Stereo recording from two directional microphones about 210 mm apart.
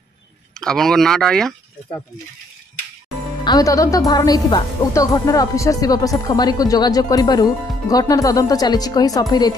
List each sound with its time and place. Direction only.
0.6 s speech: centre (ahead or behind)
3.4 s speech: 15° left (ahead or behind)